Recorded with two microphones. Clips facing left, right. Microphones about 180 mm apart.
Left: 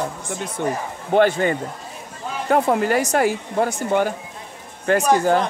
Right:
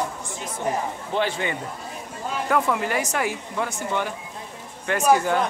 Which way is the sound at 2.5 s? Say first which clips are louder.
Left 6 dB; 35° left (ahead or behind).